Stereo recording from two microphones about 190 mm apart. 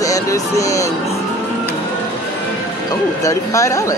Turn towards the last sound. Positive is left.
turn(degrees=15)  # may be behind; listen again after turning